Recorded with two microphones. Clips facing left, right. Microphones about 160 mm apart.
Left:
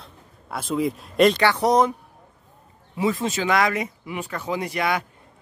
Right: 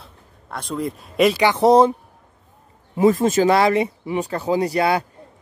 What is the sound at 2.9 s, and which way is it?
Speech, 45° right (ahead or behind).